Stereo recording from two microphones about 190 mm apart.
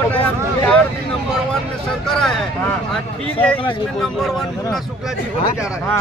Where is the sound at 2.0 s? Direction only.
5° left (ahead or behind).